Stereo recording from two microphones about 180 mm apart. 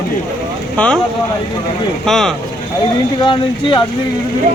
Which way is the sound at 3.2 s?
25° left (ahead or behind).